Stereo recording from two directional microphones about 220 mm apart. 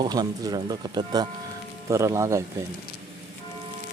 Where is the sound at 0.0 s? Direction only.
15° right (ahead or behind).